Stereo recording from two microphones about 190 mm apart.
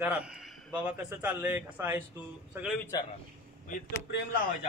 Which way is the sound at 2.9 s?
20° left (ahead or behind).